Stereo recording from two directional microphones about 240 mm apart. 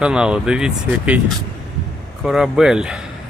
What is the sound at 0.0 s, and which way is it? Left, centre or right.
Speech, centre.